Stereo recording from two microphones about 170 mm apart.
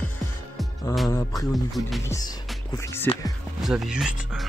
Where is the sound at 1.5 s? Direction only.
Centre (ahead or behind).